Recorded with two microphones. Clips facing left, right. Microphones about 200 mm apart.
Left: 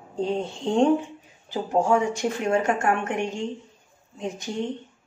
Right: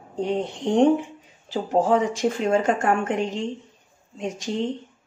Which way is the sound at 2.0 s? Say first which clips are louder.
Right 2 dB; 90° right.